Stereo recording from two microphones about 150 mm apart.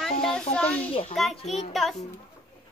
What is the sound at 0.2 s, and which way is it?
A child's voice, 5° left (ahead or behind).